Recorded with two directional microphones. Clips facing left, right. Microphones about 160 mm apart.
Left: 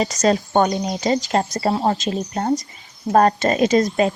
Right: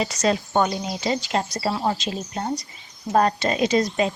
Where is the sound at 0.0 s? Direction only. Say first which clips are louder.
Left 4 dB; 40° left (ahead or behind).